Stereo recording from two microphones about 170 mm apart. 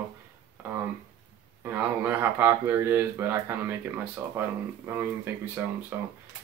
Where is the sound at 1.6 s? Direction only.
10° right (ahead or behind).